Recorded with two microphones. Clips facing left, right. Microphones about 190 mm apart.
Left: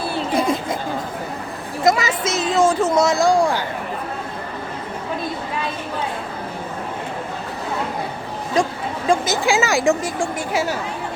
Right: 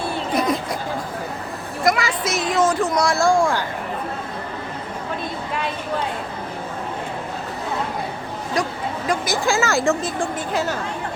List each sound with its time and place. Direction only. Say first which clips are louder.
0.3 s a sound: left 1 dB; 25° left (ahead or behind)
1.8 s speech: left 2 dB; 20° left (ahead or behind)
9.0 s speech: left 3 dB; 20° left (ahead or behind)